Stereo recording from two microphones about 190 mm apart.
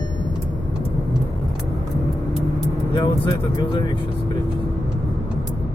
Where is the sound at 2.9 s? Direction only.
25° left (ahead or behind).